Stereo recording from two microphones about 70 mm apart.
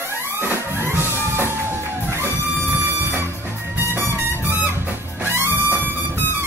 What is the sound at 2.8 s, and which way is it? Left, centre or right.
Music, right.